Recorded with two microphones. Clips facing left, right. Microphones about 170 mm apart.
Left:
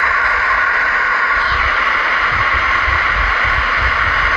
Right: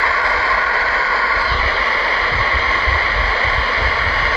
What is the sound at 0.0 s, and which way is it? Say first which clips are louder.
Vehicle: right 1 dB; 30° right (ahead or behind).